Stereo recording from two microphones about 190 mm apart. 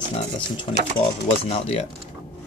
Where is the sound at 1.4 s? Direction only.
30° left (ahead or behind).